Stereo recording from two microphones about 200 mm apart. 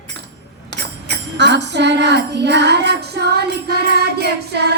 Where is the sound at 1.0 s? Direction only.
60° right (ahead or behind).